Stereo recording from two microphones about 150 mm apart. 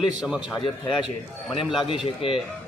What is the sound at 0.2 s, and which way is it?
Speech, 5° right (ahead or behind).